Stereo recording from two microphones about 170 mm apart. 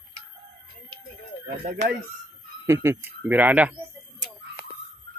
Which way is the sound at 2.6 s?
15° right (ahead or behind).